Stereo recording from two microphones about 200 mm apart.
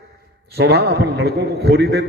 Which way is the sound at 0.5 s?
55° right (ahead or behind).